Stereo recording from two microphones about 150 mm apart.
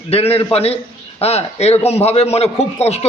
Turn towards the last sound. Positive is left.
turn(degrees=45)  # may be behind; listen again after turning